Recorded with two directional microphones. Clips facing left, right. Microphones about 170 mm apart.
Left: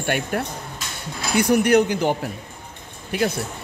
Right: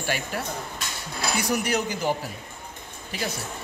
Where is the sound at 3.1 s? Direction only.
60° left (ahead or behind).